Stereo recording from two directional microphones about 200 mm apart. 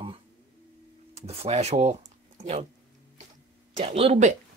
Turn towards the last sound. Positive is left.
turn(degrees=-30)  # may be behind; listen again after turning